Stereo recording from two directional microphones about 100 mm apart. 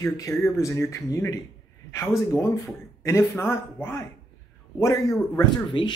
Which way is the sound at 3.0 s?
25° left (ahead or behind).